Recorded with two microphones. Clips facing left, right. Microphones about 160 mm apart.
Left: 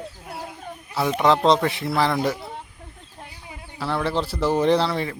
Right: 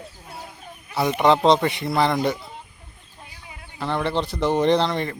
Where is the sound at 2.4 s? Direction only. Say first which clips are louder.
Left 5 dB; 65° left (ahead or behind).